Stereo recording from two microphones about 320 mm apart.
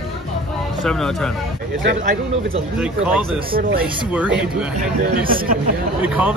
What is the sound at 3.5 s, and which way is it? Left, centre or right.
Speech, right.